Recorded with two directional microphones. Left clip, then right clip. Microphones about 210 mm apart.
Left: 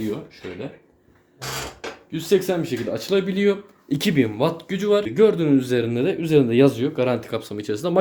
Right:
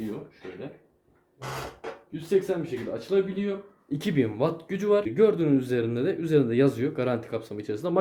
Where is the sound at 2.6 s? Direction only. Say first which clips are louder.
Left 6 dB; 50° left (ahead or behind).